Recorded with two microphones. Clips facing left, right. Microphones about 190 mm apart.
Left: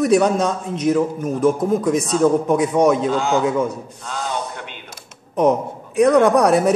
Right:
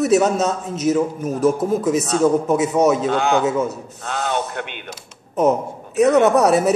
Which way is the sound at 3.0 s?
65° right (ahead or behind).